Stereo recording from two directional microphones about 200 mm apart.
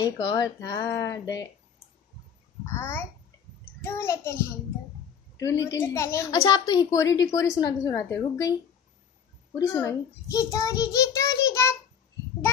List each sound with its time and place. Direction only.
0.0 s a woman's voice: 20° left (ahead or behind)
2.8 s a woman's voice: 10° left (ahead or behind)
5.4 s a woman's voice: 15° left (ahead or behind)
9.6 s a woman's voice: 15° left (ahead or behind)